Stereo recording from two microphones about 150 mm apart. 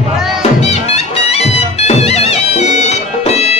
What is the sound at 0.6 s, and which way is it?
Music, 45° left (ahead or behind).